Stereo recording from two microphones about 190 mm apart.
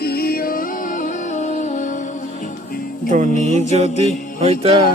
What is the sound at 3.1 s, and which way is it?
Music, 40° right (ahead or behind).